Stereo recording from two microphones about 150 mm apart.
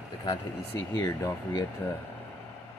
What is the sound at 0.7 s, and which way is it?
Speech, 20° left (ahead or behind).